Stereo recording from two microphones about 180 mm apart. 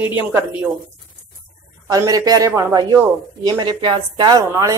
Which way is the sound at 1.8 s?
20° right (ahead or behind).